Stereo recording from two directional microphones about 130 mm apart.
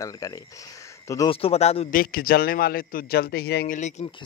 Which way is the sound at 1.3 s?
50° left (ahead or behind).